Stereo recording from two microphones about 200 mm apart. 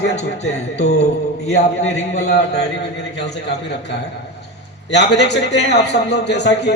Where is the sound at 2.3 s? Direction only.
55° left (ahead or behind).